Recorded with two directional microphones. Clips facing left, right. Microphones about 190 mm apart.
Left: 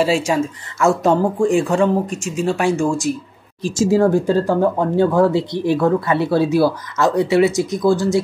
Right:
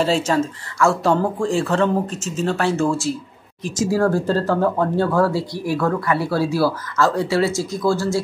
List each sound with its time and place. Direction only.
0.0 s speech: 10° left (ahead or behind)
3.6 s speech: 25° left (ahead or behind)